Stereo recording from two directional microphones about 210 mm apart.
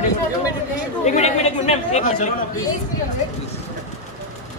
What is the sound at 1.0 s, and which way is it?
Speech, 30° left (ahead or behind).